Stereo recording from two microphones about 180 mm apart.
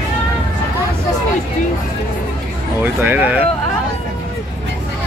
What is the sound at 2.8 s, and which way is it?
Speech, 10° right (ahead or behind).